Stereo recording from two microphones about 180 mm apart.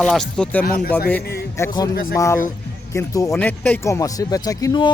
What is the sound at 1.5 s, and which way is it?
Speech, 20° left (ahead or behind).